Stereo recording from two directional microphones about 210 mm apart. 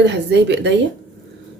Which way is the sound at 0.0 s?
55° right (ahead or behind).